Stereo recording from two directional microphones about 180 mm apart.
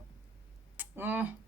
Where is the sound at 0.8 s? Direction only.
10° right (ahead or behind).